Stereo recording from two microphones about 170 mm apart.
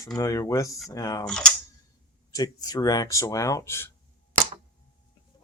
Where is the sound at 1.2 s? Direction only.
5° left (ahead or behind).